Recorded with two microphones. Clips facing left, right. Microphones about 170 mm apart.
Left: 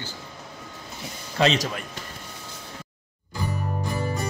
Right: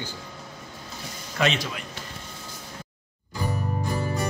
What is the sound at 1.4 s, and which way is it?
Speech, 40° left (ahead or behind).